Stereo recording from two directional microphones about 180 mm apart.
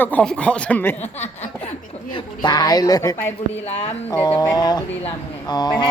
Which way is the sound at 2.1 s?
25° left (ahead or behind).